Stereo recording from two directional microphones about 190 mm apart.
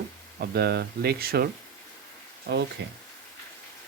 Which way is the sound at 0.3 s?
55° right (ahead or behind).